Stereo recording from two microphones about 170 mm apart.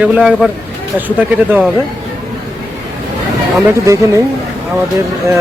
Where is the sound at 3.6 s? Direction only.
15° right (ahead or behind).